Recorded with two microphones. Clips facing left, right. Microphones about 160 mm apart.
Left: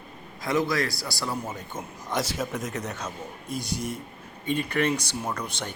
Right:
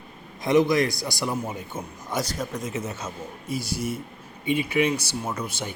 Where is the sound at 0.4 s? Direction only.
20° right (ahead or behind).